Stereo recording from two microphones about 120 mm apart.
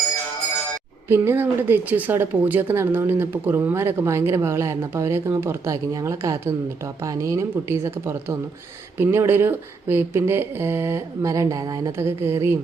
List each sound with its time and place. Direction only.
1.0 s speech: 20° right (ahead or behind)